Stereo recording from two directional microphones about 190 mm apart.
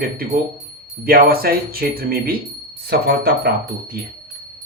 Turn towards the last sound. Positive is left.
turn(degrees=-55)  # may be behind; listen again after turning